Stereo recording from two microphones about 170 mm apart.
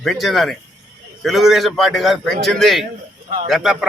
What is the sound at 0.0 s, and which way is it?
A man's voice, centre (ahead or behind).